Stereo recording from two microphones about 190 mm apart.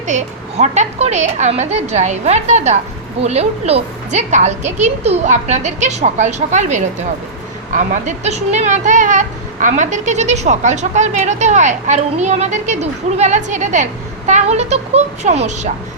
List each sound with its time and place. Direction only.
0.1 s a woman's voice: 40° right (ahead or behind)